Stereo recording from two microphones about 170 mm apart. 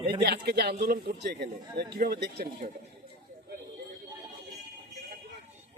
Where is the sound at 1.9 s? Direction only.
65° right (ahead or behind).